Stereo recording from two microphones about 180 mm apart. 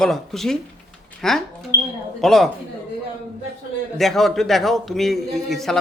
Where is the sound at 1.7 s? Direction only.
20° left (ahead or behind).